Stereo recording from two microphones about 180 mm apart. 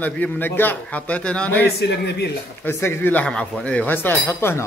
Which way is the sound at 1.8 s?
65° left (ahead or behind).